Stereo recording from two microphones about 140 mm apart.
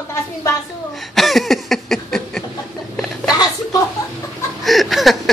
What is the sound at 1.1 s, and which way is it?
Cough, centre (ahead or behind).